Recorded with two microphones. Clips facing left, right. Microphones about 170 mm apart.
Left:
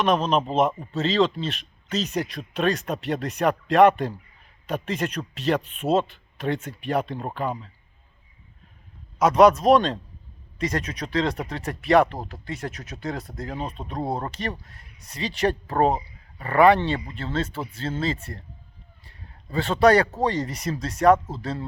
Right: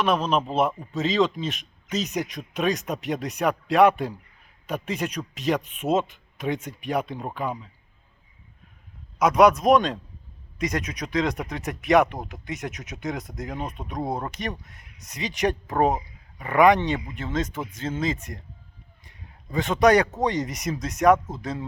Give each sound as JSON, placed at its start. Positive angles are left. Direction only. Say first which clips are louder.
{"t": 0.0, "sound": "a man's voice", "louder": "left 1 dB", "side_deg": -5}
{"t": 9.1, "sound": "a man's voice", "louder": "left 1 dB", "side_deg": -10}
{"t": 19.0, "sound": "a sound", "louder": "even", "side_deg": -15}
{"t": 20.2, "sound": "a man's voice", "louder": "even", "side_deg": -15}